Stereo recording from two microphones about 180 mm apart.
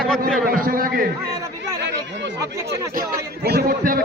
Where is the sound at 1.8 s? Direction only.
75° right (ahead or behind).